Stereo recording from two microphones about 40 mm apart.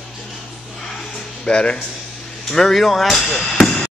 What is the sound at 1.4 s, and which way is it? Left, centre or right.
Speech, left.